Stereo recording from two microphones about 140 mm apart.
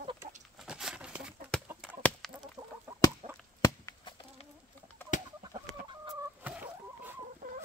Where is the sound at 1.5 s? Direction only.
10° left (ahead or behind).